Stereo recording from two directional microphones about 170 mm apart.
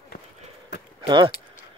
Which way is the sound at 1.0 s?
30° right (ahead or behind).